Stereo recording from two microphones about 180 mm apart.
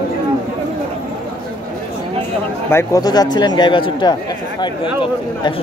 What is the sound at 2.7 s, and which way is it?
Speech, 20° left (ahead or behind).